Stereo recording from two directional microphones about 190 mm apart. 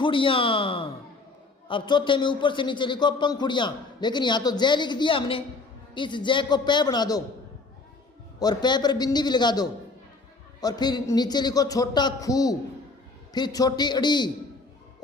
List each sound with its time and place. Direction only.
0.0 s a man's voice: 25° left (ahead or behind)
8.4 s a man's voice: 20° left (ahead or behind)